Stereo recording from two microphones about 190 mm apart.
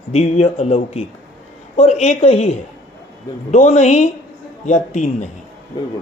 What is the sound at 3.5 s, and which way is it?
Speech, 35° left (ahead or behind).